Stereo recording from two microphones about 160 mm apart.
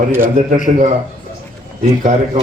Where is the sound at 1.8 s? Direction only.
50° right (ahead or behind).